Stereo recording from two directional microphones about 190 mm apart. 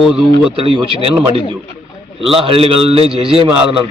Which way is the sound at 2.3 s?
30° right (ahead or behind).